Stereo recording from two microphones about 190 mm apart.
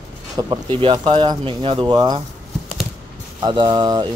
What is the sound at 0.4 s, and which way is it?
Speech, 25° right (ahead or behind).